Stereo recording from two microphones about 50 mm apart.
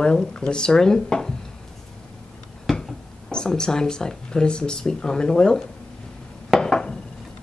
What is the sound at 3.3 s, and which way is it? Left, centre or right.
Speech, centre.